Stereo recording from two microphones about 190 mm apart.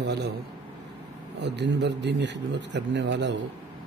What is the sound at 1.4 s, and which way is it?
A man's voice, 65° right (ahead or behind).